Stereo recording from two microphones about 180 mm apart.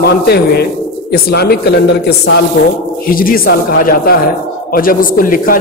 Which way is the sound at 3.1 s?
55° left (ahead or behind).